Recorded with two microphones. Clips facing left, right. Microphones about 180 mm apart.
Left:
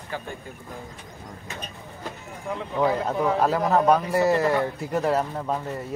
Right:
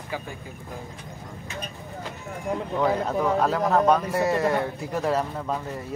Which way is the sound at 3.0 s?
5° left (ahead or behind).